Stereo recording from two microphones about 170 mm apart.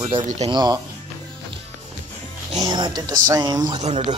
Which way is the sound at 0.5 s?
25° right (ahead or behind).